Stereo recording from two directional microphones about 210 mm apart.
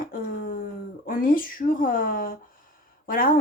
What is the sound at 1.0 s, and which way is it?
A woman's voice, 40° left (ahead or behind).